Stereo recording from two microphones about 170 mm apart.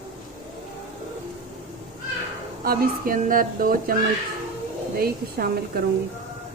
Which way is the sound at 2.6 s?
60° right (ahead or behind).